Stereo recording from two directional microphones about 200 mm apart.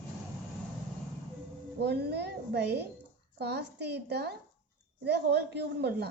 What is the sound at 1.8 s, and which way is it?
A woman's voice, 55° right (ahead or behind).